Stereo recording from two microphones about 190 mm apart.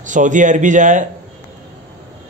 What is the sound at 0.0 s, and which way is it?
A man's voice, 40° right (ahead or behind).